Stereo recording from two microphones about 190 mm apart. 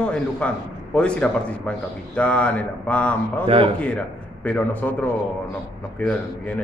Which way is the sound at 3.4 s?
30° right (ahead or behind).